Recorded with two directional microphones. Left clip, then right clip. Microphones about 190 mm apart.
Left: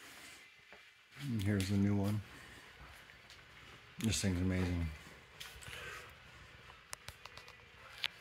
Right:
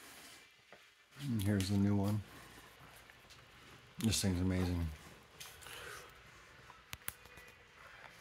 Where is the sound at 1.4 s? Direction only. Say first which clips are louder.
Even; centre (ahead or behind).